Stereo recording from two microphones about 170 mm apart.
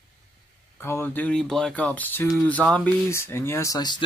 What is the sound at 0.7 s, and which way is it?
Speech, 15° left (ahead or behind).